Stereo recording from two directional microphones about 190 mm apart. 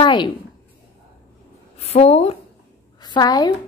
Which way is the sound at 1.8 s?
35° left (ahead or behind).